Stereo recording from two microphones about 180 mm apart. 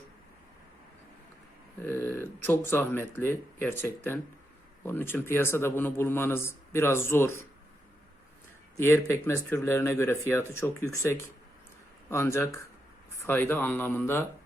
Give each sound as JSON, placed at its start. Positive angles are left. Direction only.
{"t": 1.8, "sound": "a sound", "side_deg": 10}
{"t": 2.6, "sound": "speech", "side_deg": 10}
{"t": 8.8, "sound": "speech", "side_deg": 15}